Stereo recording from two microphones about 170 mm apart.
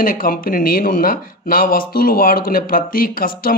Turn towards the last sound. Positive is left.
turn(degrees=60)  # may be behind; listen again after turning